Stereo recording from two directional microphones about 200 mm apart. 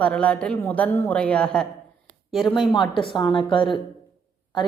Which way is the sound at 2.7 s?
25° left (ahead or behind).